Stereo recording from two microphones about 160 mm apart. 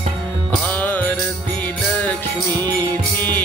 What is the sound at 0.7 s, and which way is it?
Music, 10° left (ahead or behind).